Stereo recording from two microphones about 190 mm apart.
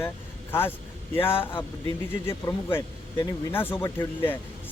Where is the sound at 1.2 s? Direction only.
30° left (ahead or behind).